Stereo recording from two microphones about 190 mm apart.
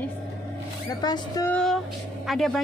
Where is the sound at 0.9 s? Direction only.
20° left (ahead or behind).